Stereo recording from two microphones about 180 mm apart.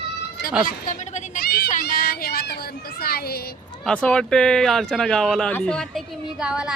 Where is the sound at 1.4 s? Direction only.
60° left (ahead or behind).